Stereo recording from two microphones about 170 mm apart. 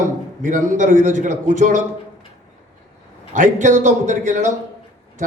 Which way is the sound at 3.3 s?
45° right (ahead or behind).